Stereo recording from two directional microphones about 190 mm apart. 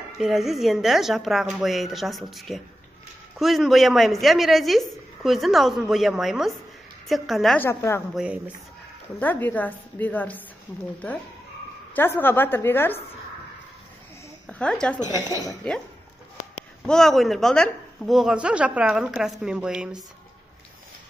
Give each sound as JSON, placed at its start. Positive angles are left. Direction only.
{"t": 0.2, "sound": "a woman's voice", "side_deg": 0}
{"t": 7.6, "sound": "a woman's voice", "side_deg": 10}
{"t": 8.1, "sound": "a woman's voice", "side_deg": -5}
{"t": 9.2, "sound": "a woman's voice", "side_deg": 10}
{"t": 11.9, "sound": "a woman's voice", "side_deg": 10}
{"t": 14.5, "sound": "a woman's voice", "side_deg": 5}
{"t": 15.2, "sound": "speech", "side_deg": 20}
{"t": 16.8, "sound": "a woman's voice", "side_deg": 5}